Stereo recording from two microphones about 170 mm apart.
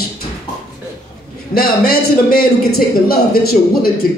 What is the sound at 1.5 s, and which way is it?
A man's voice, 60° left (ahead or behind).